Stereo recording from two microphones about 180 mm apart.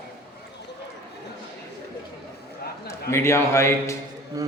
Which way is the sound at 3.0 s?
15° left (ahead or behind).